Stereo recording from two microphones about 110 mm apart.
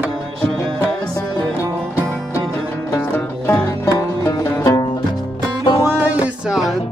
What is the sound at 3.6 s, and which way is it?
Music, 35° left (ahead or behind).